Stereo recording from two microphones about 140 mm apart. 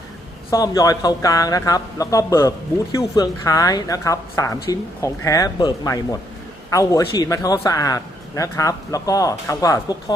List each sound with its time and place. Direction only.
0.5 s a man's voice: 25° left (ahead or behind)